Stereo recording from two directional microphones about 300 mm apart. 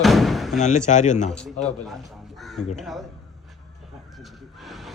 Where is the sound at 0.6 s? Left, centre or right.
Left.